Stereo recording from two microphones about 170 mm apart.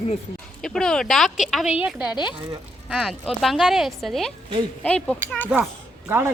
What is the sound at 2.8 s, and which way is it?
Speech, centre (ahead or behind).